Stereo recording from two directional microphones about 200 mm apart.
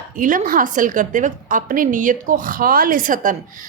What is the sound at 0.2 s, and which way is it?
A woman's voice, 45° right (ahead or behind).